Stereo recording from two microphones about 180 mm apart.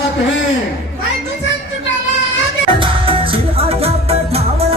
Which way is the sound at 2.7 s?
30° right (ahead or behind).